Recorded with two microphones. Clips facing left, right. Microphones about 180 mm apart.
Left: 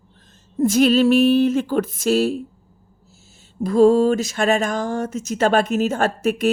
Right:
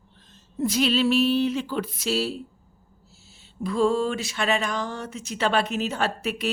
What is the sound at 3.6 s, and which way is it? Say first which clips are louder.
Speech: left 9 dB; 40° left (ahead or behind).